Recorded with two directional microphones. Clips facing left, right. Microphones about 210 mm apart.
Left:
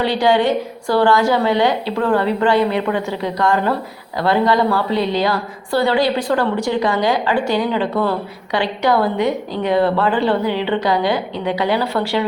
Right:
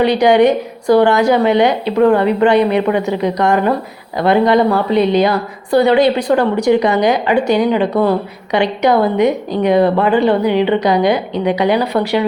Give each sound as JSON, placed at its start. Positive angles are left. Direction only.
{"t": 0.0, "sound": "a woman's voice", "side_deg": -20}